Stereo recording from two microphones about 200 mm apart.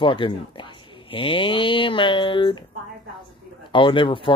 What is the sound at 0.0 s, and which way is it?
Speech, 25° left (ahead or behind).